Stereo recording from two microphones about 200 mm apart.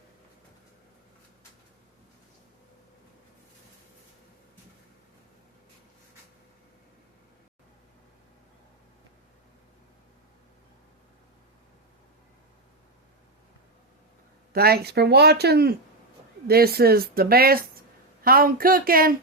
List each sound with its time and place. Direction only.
14.5 s speech: 50° right (ahead or behind)